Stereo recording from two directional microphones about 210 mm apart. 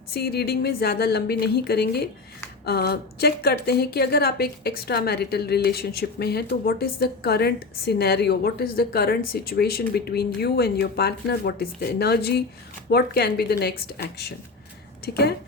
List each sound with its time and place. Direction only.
0.1 s a woman's voice: 50° left (ahead or behind)